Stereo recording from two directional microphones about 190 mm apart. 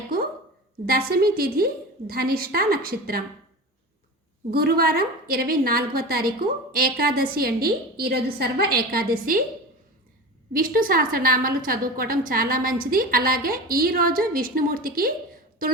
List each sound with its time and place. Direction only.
0.9 s a woman's voice: 50° right (ahead or behind)
4.5 s a woman's voice: 55° right (ahead or behind)
10.5 s a woman's voice: 45° right (ahead or behind)